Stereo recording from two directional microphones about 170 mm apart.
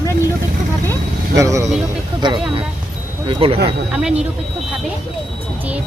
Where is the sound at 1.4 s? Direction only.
20° right (ahead or behind).